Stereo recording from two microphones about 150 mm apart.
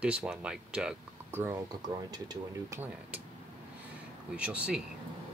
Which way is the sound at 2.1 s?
25° right (ahead or behind).